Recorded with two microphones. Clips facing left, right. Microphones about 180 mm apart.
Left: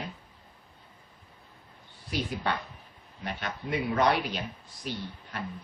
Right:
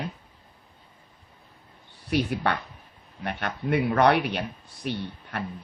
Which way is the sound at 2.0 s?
65° right (ahead or behind).